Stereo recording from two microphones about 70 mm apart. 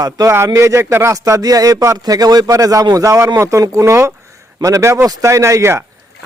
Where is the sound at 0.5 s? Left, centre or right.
Right.